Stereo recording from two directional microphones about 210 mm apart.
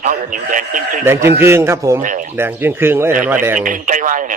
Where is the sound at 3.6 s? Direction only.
40° right (ahead or behind).